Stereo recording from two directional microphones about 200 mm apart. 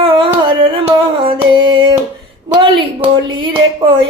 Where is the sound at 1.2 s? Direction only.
25° right (ahead or behind).